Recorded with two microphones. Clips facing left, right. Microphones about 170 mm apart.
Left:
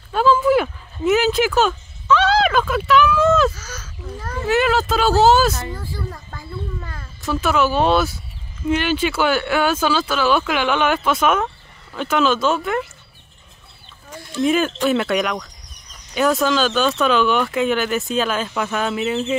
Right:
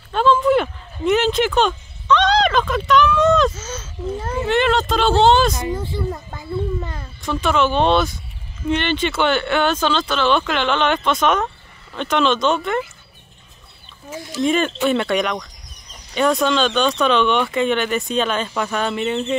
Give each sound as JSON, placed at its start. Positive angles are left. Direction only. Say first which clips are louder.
{"t": 0.1, "sound": "speech", "louder": "even", "side_deg": 5}
{"t": 3.5, "sound": "a child's voice", "louder": "right 6 dB", "side_deg": -25}
{"t": 4.5, "sound": "speech", "louder": "left 1 dB", "side_deg": 5}
{"t": 5.5, "sound": "a child's voice", "louder": "right 4 dB", "side_deg": -15}
{"t": 7.2, "sound": "speech", "louder": "even", "side_deg": 5}
{"t": 14.1, "sound": "speech", "louder": "left 1 dB", "side_deg": 0}